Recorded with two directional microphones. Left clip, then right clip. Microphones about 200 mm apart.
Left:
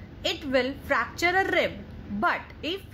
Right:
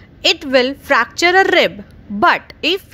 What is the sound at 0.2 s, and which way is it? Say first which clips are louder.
A woman's voice: right 12 dB; 40° right (ahead or behind).